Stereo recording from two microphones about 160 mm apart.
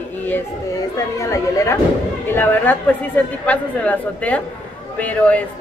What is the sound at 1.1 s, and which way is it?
Speech, 20° left (ahead or behind).